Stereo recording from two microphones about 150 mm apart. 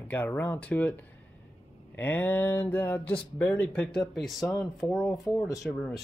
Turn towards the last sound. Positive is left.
turn(degrees=10)  # may be behind; listen again after turning